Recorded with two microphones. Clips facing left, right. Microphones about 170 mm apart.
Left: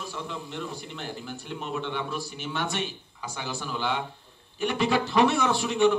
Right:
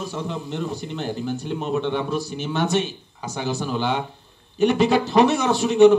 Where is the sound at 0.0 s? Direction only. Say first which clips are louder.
Right 7 dB; 40° right (ahead or behind).